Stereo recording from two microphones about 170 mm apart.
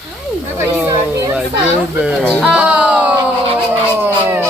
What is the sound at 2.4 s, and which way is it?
Music, 5° right (ahead or behind).